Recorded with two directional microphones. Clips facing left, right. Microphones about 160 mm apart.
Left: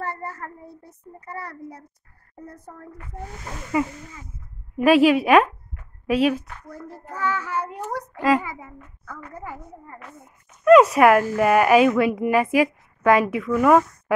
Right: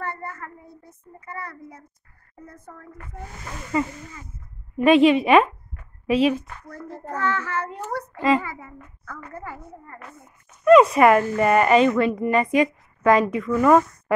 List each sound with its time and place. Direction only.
0.0 s a child's voice: 35° left (ahead or behind)
3.7 s a child's voice: 10° left (ahead or behind)
10.6 s speech: centre (ahead or behind)